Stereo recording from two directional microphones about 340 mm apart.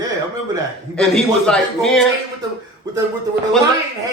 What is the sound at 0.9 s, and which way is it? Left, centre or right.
Speech, centre.